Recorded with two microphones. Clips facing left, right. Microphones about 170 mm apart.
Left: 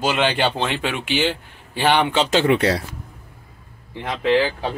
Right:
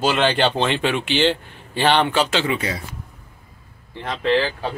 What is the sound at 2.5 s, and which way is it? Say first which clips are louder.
Speech: left 7 dB; 70° left (ahead or behind).